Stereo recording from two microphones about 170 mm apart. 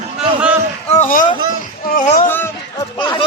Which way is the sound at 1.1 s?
50° left (ahead or behind).